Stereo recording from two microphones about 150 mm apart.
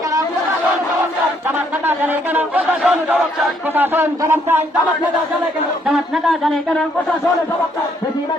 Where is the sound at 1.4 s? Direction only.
15° right (ahead or behind).